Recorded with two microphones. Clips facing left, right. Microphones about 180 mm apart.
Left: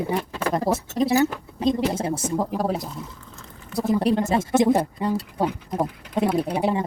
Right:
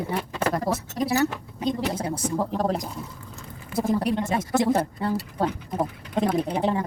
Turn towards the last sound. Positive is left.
turn(degrees=10)  # may be behind; listen again after turning